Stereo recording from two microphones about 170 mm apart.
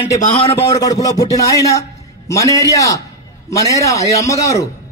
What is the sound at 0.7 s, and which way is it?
A man's voice, 20° left (ahead or behind).